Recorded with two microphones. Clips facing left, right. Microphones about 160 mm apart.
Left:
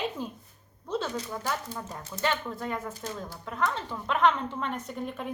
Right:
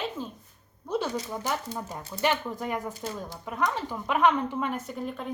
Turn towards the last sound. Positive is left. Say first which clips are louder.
# right 1 dB
turn(degrees=0)  # may be behind; listen again after turning